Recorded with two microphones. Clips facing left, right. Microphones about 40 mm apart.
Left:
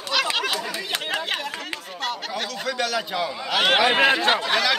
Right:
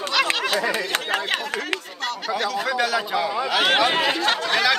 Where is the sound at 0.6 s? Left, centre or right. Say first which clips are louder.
Right 5 dB; right.